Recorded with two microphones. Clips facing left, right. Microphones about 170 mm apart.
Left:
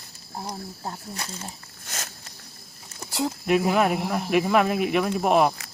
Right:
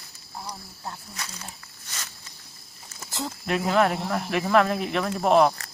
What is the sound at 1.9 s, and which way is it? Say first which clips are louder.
Walk: left 4 dB; 50° left (ahead or behind).